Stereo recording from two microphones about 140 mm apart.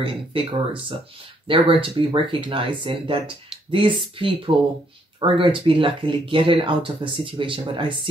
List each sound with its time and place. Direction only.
0.0 s speech: 40° right (ahead or behind)